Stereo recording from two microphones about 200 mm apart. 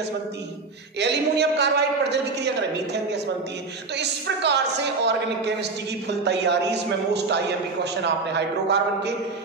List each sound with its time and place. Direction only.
0.9 s a woman's voice: 60° right (ahead or behind)